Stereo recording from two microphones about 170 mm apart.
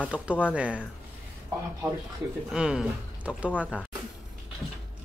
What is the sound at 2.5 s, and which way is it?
Speech, 5° right (ahead or behind).